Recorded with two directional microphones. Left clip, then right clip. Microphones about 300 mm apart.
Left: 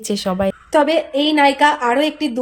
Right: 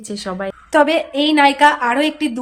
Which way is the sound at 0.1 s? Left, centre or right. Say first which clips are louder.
Left 5 dB; left.